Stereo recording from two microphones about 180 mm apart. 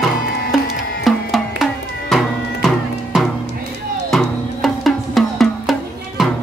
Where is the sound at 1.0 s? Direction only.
Centre (ahead or behind).